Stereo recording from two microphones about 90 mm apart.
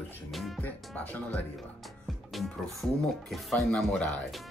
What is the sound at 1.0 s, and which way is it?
Speech, 15° left (ahead or behind).